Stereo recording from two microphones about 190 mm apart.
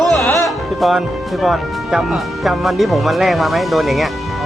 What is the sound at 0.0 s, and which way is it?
Music, centre (ahead or behind).